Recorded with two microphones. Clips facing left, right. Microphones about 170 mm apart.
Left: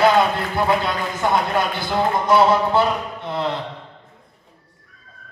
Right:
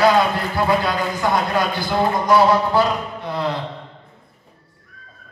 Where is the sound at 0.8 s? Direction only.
25° left (ahead or behind).